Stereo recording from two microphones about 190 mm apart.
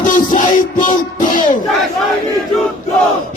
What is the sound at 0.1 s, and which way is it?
Music, 45° left (ahead or behind).